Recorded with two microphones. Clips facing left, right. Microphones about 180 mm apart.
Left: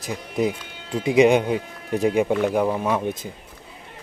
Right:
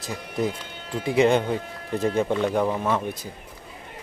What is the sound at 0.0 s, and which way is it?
Speech, 15° left (ahead or behind).